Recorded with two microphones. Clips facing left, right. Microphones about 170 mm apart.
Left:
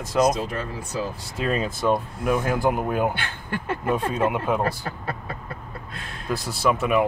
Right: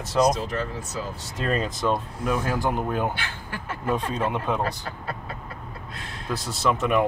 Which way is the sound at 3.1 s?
55° left (ahead or behind).